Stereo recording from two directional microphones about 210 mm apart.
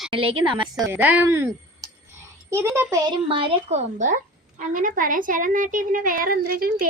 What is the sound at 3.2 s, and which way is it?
A woman's voice, 25° right (ahead or behind).